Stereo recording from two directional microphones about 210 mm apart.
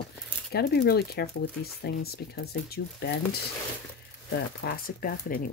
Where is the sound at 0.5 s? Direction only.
50° left (ahead or behind).